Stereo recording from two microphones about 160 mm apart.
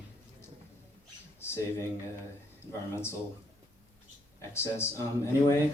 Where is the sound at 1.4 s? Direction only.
15° left (ahead or behind).